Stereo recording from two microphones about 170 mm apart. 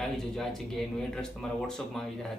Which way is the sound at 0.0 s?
5° left (ahead or behind).